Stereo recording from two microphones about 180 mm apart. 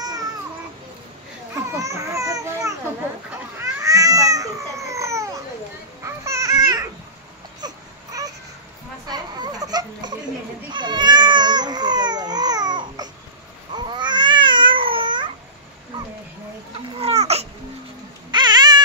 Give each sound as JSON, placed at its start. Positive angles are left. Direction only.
{"t": 1.5, "sound": "babbling", "side_deg": -15}
{"t": 3.6, "sound": "cat", "side_deg": -20}
{"t": 6.0, "sound": "babbling", "side_deg": -15}
{"t": 7.6, "sound": "baby cry", "side_deg": -20}
{"t": 9.0, "sound": "a sound", "side_deg": -20}
{"t": 10.7, "sound": "cat", "side_deg": -25}
{"t": 13.7, "sound": "babbling", "side_deg": -25}
{"t": 17.0, "sound": "baby cry", "side_deg": -35}
{"t": 18.3, "sound": "a sound", "side_deg": -25}